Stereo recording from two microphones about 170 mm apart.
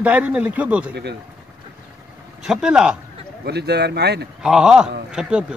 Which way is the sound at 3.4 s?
75° right (ahead or behind).